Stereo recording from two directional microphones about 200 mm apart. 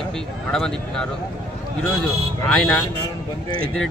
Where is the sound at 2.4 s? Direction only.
5° left (ahead or behind).